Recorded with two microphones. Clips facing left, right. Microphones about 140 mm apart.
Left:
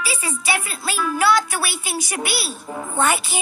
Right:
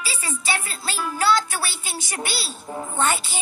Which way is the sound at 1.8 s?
15° left (ahead or behind).